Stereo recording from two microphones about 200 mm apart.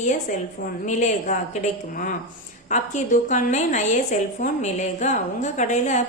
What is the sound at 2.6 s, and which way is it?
A woman's voice, 40° left (ahead or behind).